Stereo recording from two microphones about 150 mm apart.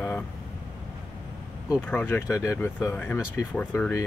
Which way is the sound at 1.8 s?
15° left (ahead or behind).